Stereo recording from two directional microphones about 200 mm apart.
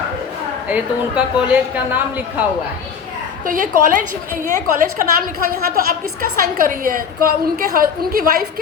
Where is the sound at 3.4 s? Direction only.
40° right (ahead or behind).